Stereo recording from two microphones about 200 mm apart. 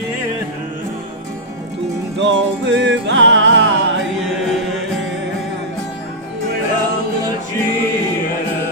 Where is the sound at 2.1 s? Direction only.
60° right (ahead or behind).